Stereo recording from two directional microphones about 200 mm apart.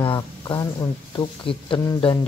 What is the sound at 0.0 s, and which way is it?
Speech, 25° left (ahead or behind).